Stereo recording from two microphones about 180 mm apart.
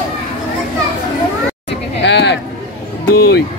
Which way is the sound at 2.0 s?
75° left (ahead or behind).